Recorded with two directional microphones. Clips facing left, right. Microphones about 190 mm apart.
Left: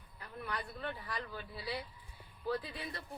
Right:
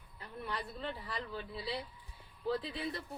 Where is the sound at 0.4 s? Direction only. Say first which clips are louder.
Right 1 dB; 25° right (ahead or behind).